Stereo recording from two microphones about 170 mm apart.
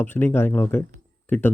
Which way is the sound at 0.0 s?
10° left (ahead or behind).